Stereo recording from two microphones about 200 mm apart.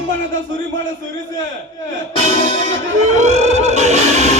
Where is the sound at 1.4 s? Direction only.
70° right (ahead or behind).